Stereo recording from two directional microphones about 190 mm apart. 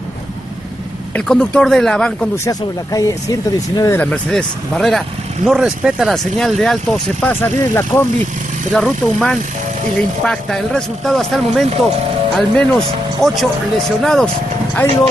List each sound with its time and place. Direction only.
1.1 s speech: 5° left (ahead or behind)
2.3 s speech: 15° left (ahead or behind)
4.0 s speech: 5° left (ahead or behind)